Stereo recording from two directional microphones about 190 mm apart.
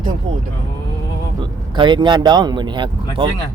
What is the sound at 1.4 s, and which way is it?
Speech, 25° right (ahead or behind).